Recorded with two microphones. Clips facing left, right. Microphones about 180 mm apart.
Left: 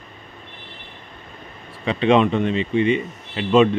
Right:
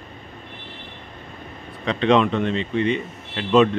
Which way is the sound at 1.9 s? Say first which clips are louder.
Left 1 dB; 5° left (ahead or behind).